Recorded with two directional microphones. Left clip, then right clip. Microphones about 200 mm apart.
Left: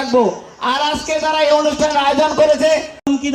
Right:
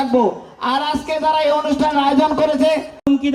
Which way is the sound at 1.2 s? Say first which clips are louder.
Left 2 dB; 60° left (ahead or behind).